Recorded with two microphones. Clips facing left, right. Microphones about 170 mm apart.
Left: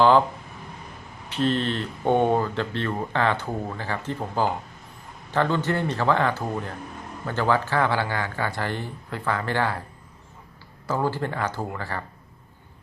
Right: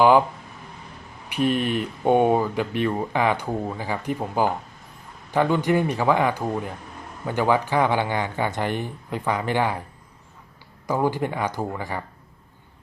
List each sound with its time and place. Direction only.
1.3 s speech: 10° right (ahead or behind)
10.8 s speech: 15° right (ahead or behind)